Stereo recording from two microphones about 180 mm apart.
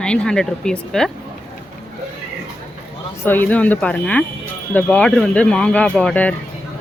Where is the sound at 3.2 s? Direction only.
10° left (ahead or behind).